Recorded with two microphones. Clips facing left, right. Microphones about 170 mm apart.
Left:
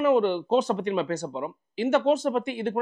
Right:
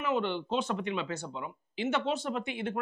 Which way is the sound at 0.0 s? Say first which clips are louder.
Left 9 dB; 45° left (ahead or behind).